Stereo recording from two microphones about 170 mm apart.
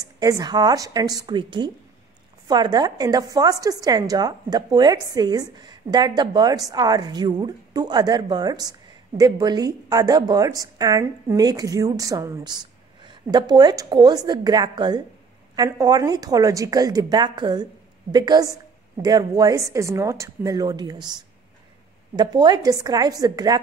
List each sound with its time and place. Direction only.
0.0 s a woman's voice: 20° right (ahead or behind)